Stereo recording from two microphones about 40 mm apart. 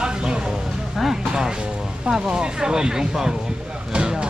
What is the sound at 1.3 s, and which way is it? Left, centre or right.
Speech, centre.